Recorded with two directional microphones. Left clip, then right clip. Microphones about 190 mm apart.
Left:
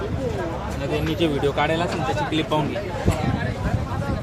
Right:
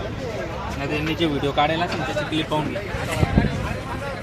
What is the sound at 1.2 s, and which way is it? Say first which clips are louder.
Speech: right 1 dB; 40° right (ahead or behind).